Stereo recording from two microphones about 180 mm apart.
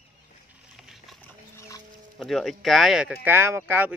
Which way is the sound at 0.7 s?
Centre (ahead or behind).